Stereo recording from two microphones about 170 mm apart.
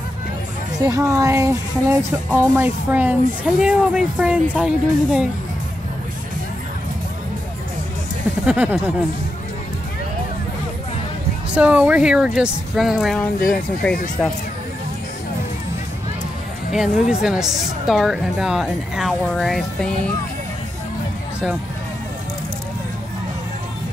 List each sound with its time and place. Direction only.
0.8 s a woman's voice: 20° right (ahead or behind)
8.5 s speech: 10° right (ahead or behind)
11.5 s a woman's voice: 10° right (ahead or behind)
16.7 s a woman's voice: centre (ahead or behind)